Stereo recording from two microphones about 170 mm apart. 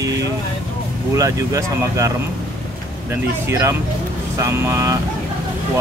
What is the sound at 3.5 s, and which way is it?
Speech, 15° right (ahead or behind).